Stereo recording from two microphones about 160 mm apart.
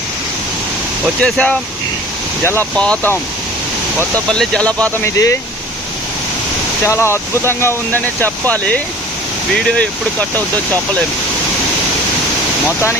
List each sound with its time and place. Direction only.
1.2 s speech: 5° left (ahead or behind)
4.3 s speech: 5° left (ahead or behind)
6.8 s speech: 15° left (ahead or behind)